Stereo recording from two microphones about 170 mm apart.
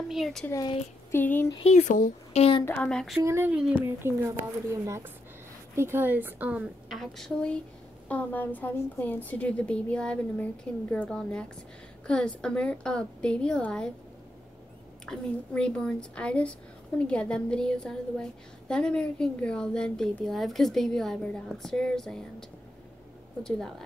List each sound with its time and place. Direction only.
0.1 s a woman's voice: centre (ahead or behind)
0.5 s a woman's voice: 20° left (ahead or behind)
1.5 s speech: 40° left (ahead or behind)
2.6 s a woman's voice: 10° left (ahead or behind)
3.3 s a woman's voice: 15° right (ahead or behind); by 13.9 s 5° left (ahead or behind)
15.0 s a woman's voice: 5° left (ahead or behind)